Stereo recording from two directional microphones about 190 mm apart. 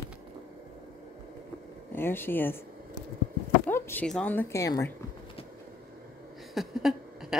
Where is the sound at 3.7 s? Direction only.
10° left (ahead or behind).